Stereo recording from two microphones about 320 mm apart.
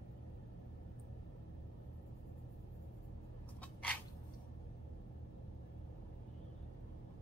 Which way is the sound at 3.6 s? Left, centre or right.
Centre.